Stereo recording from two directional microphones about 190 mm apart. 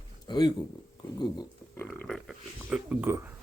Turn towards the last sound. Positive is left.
turn(degrees=-10)  # may be behind; listen again after turning